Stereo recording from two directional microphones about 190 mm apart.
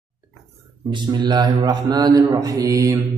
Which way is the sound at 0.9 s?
25° right (ahead or behind).